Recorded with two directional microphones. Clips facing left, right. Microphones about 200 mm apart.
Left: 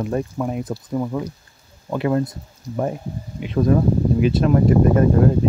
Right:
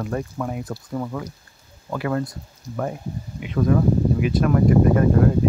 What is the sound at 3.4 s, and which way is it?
Speech, 30° left (ahead or behind).